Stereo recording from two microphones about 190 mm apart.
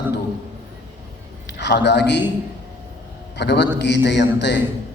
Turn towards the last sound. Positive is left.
turn(degrees=65)  # may be behind; listen again after turning